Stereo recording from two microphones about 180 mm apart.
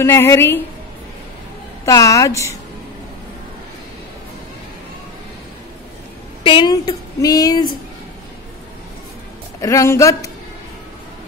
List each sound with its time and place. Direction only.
0.0 s a woman's voice: 15° left (ahead or behind)
1.9 s a woman's voice: 15° left (ahead or behind)
6.4 s speech: 25° left (ahead or behind)
9.6 s speech: 15° left (ahead or behind)